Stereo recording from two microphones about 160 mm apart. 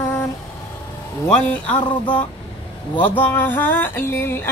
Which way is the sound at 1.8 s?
30° left (ahead or behind).